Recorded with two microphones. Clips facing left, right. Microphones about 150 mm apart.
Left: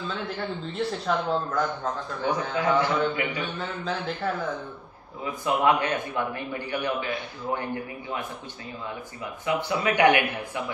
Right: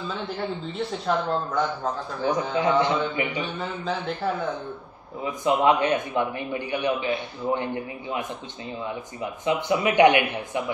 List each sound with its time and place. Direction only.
0.0 s speech: centre (ahead or behind)
2.5 s a man's voice: 20° right (ahead or behind)
3.5 s speech: centre (ahead or behind)
5.2 s a man's voice: 20° right (ahead or behind)